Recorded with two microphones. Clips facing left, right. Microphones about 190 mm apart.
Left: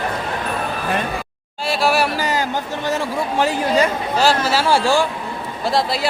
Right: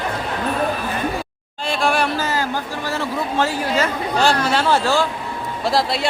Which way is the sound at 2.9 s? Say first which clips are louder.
Left 2 dB; 15° left (ahead or behind).